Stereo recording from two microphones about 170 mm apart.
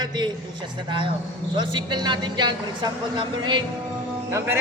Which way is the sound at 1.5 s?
25° right (ahead or behind).